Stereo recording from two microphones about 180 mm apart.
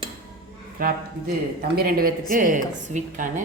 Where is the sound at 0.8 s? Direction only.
60° right (ahead or behind).